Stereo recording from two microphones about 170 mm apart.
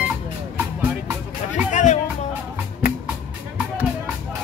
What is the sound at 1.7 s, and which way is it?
Music, 45° left (ahead or behind).